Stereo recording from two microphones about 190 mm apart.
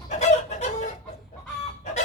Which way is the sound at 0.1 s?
40° left (ahead or behind).